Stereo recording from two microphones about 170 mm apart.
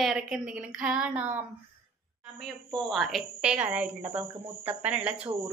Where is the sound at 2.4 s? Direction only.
Centre (ahead or behind).